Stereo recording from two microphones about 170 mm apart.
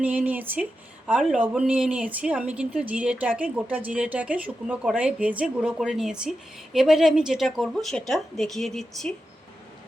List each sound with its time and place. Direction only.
0.0 s speech: 10° right (ahead or behind)